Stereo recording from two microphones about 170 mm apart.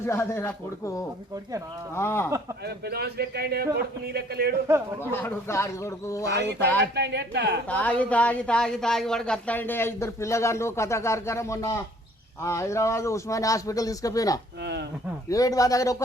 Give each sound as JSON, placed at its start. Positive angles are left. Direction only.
{"t": 0.0, "sound": "speech", "side_deg": 15}
{"t": 2.0, "sound": "speech", "side_deg": 15}
{"t": 2.6, "sound": "a man's voice", "side_deg": -70}
{"t": 5.1, "sound": "speech", "side_deg": 15}
{"t": 6.9, "sound": "speech", "side_deg": -85}
{"t": 7.7, "sound": "speech", "side_deg": 10}
{"t": 14.6, "sound": "speech", "side_deg": -80}
{"t": 15.3, "sound": "speech", "side_deg": 20}